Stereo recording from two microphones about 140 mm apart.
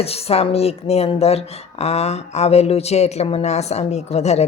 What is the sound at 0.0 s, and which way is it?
Speech, 45° left (ahead or behind).